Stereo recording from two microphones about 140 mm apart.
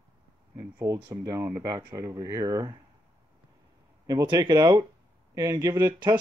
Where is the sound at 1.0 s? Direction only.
25° right (ahead or behind).